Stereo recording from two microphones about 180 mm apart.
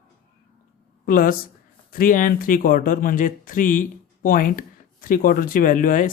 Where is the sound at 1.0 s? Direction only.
50° left (ahead or behind).